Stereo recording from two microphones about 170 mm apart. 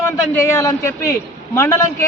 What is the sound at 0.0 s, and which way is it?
Speech, 15° left (ahead or behind).